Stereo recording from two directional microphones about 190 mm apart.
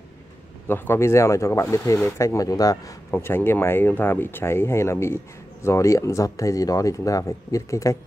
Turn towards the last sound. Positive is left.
turn(degrees=15)  # may be behind; listen again after turning